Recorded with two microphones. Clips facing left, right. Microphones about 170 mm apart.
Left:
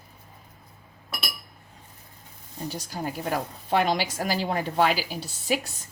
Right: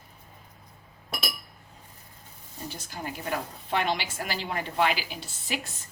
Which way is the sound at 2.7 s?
40° left (ahead or behind).